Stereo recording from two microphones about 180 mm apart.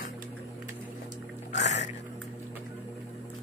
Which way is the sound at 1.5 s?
40° left (ahead or behind).